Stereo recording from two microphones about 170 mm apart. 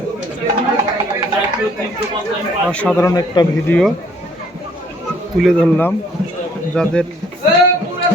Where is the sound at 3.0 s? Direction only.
20° left (ahead or behind).